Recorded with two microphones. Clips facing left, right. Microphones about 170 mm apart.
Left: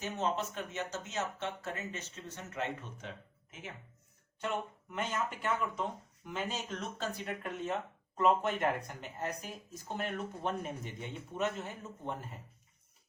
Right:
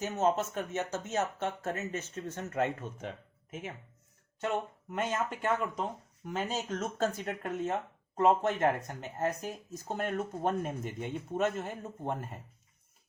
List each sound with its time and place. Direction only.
0.0 s speech: 45° right (ahead or behind)
4.9 s speech: 45° right (ahead or behind)